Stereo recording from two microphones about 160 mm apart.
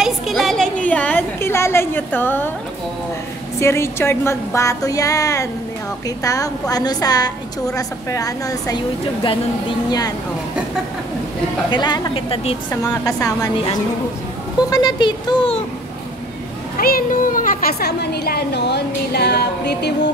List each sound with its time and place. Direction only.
0.0 s a sound: centre (ahead or behind)
3.5 s a woman's voice: 15° left (ahead or behind)
11.7 s a woman's voice: 25° left (ahead or behind)
12.8 s a woman's voice: 20° left (ahead or behind)
14.7 s a woman's voice: 25° left (ahead or behind)
16.7 s speech: 65° left (ahead or behind); by 19.9 s 90° left